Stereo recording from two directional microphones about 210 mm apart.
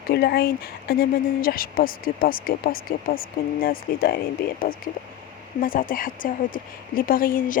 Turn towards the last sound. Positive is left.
turn(degrees=40)  # may be behind; listen again after turning